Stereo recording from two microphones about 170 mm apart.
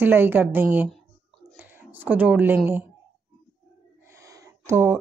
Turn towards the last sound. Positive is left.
turn(degrees=-15)  # may be behind; listen again after turning